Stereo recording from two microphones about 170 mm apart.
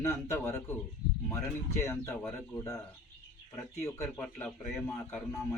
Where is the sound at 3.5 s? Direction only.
15° left (ahead or behind).